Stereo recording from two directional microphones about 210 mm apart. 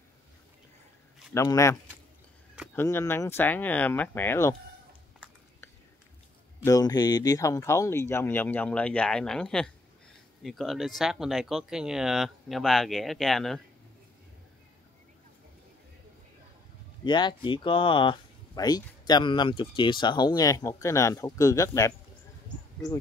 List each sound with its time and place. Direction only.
1.3 s speech: 15° left (ahead or behind)
6.6 s speech: 15° left (ahead or behind); by 13.6 s centre (ahead or behind)
17.0 s speech: 20° left (ahead or behind)